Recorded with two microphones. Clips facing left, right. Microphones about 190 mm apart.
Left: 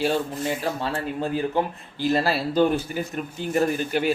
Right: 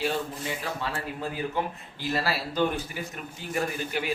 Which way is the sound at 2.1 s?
25° left (ahead or behind).